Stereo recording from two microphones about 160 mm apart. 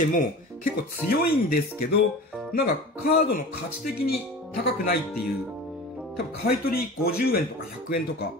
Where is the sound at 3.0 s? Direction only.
75° left (ahead or behind).